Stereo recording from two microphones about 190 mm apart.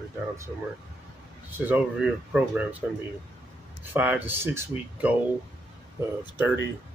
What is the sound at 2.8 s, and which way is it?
Speech, 5° right (ahead or behind).